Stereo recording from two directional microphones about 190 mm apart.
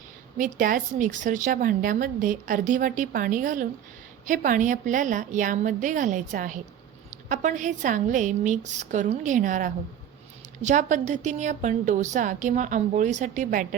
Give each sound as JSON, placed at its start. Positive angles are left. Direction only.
{"t": 0.3, "sound": "a woman's voice", "side_deg": -45}